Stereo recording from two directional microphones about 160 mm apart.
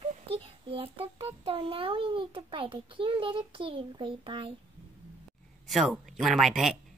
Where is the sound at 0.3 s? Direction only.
35° right (ahead or behind).